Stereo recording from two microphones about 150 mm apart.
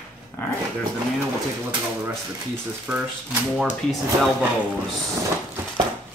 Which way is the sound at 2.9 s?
10° right (ahead or behind).